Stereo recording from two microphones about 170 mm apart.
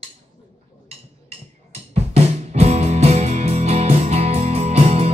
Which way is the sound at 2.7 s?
40° right (ahead or behind).